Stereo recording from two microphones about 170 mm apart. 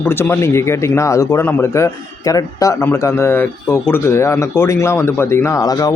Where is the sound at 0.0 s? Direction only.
15° left (ahead or behind).